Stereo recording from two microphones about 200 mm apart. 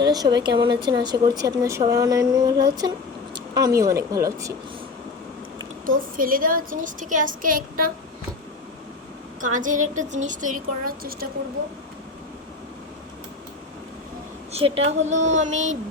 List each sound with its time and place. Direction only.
0.0 s speech: 20° right (ahead or behind)
6.1 s a woman's voice: 45° right (ahead or behind)
9.4 s a woman's voice: 40° right (ahead or behind)
14.5 s a woman's voice: 30° right (ahead or behind)